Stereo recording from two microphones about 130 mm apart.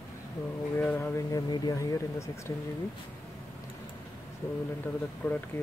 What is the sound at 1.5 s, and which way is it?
Speech, 25° left (ahead or behind).